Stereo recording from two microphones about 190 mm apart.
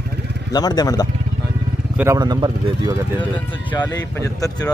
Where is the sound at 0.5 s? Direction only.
20° left (ahead or behind).